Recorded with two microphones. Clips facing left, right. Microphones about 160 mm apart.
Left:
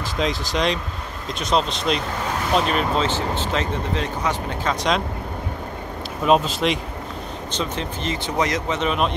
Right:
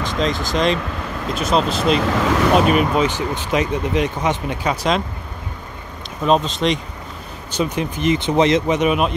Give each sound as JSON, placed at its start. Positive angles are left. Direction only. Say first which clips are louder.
{"t": 0.2, "sound": "speech", "louder": "right 3 dB", "side_deg": 0}
{"t": 2.0, "sound": "speech", "louder": "right 8 dB", "side_deg": -90}
{"t": 2.7, "sound": "speech", "louder": "right 4 dB", "side_deg": -10}
{"t": 6.2, "sound": "speech", "louder": "right 1 dB", "side_deg": 5}
{"t": 7.5, "sound": "speech", "louder": "right 6 dB", "side_deg": -10}